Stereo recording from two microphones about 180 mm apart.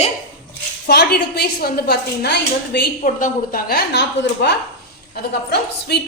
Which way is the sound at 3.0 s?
50° left (ahead or behind).